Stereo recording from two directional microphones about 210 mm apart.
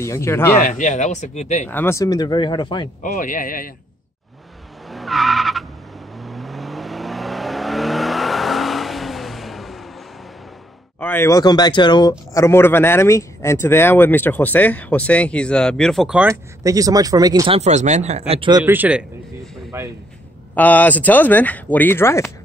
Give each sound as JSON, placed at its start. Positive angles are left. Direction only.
{"t": 0.0, "sound": "speech", "side_deg": 15}
{"t": 0.6, "sound": "speech", "side_deg": 35}
{"t": 1.7, "sound": "speech", "side_deg": 10}
{"t": 3.0, "sound": "speech", "side_deg": 40}
{"t": 4.8, "sound": "vehicle", "side_deg": 0}
{"t": 11.0, "sound": "speech", "side_deg": 10}
{"t": 17.6, "sound": "speech", "side_deg": -35}
{"t": 18.6, "sound": "a man's voice", "side_deg": -10}
{"t": 20.5, "sound": "speech", "side_deg": 10}